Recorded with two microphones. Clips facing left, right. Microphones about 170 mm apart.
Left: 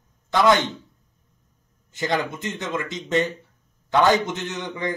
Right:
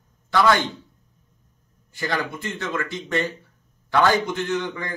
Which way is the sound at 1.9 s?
20° left (ahead or behind).